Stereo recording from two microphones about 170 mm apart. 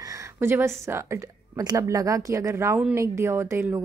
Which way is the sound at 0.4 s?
15° right (ahead or behind).